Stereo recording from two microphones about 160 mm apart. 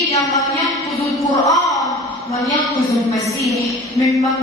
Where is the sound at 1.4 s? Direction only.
20° left (ahead or behind).